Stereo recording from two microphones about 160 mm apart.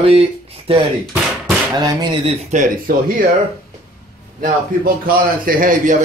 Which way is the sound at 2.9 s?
65° right (ahead or behind).